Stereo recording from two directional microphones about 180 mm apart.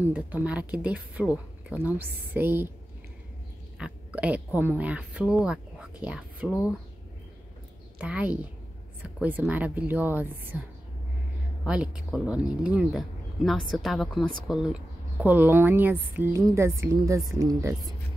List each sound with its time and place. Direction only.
0.0 s speech: 10° right (ahead or behind)
3.7 s speech: 5° right (ahead or behind)
8.0 s speech: 10° right (ahead or behind)
11.6 s speech: 5° right (ahead or behind)